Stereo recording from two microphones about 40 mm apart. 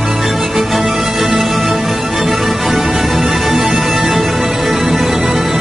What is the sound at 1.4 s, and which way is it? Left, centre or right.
Music, centre.